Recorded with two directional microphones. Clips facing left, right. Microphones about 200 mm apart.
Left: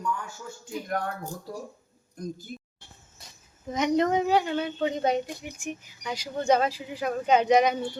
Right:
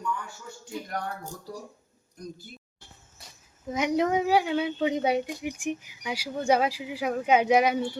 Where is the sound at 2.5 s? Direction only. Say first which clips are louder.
Left 10 dB; 45° left (ahead or behind).